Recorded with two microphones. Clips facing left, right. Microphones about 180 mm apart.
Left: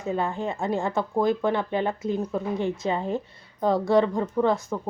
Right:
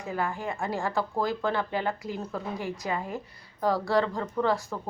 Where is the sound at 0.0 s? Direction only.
25° left (ahead or behind).